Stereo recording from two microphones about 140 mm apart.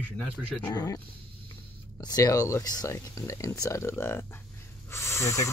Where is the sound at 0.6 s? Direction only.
30° left (ahead or behind).